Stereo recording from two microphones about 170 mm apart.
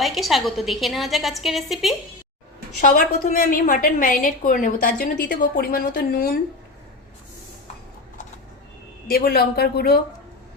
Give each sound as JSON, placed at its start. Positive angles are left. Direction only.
{"t": 0.0, "sound": "a woman's voice", "side_deg": 0}
{"t": 2.8, "sound": "a woman's voice", "side_deg": 50}
{"t": 9.0, "sound": "a woman's voice", "side_deg": 60}